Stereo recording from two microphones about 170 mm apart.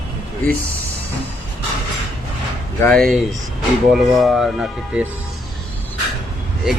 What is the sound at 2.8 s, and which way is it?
Speech, 5° left (ahead or behind).